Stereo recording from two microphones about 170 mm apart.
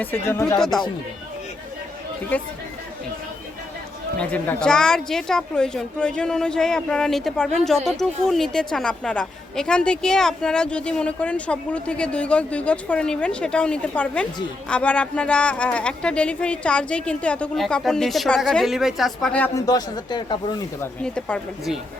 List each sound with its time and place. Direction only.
0.0 s speech: 10° left (ahead or behind)
0.6 s a woman's voice: centre (ahead or behind)
2.3 s speech: 10° left (ahead or behind)
4.2 s a woman's voice: 5° left (ahead or behind)
19.5 s speech: 20° left (ahead or behind)
20.8 s a woman's voice: 5° left (ahead or behind)